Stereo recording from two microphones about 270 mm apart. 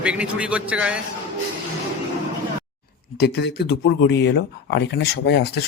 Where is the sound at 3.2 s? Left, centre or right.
Left.